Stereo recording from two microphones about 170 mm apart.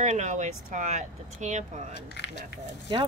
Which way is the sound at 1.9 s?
80° left.